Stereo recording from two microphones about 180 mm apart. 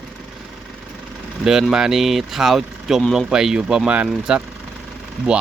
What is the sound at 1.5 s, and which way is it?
Speech, 5° right (ahead or behind).